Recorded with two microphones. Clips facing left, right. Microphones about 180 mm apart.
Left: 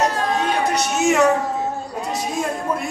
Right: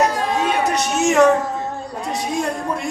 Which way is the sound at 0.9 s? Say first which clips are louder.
Right 3 dB; 5° left (ahead or behind).